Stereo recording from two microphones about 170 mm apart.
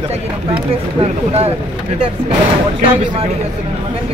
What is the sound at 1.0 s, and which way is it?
Speech, 35° right (ahead or behind).